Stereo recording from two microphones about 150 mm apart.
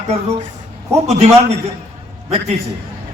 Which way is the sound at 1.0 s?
45° right (ahead or behind).